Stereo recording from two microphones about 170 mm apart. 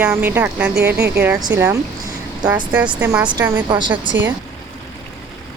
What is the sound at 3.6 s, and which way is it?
Speech, 25° right (ahead or behind).